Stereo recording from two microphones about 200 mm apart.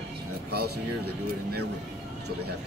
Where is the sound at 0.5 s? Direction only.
50° right (ahead or behind).